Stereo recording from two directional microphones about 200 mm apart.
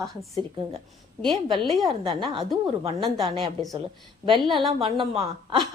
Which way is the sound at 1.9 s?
25° right (ahead or behind).